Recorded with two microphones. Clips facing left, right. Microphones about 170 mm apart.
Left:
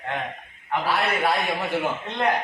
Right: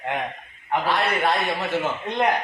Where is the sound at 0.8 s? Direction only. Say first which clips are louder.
Even; 10° left (ahead or behind).